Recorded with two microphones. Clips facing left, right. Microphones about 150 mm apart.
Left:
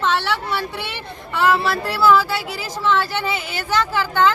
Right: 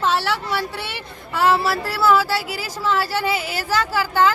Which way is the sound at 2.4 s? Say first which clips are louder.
Left 1 dB; 5° right (ahead or behind).